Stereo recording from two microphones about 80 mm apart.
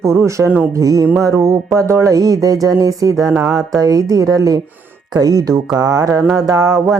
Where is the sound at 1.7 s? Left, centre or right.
Right.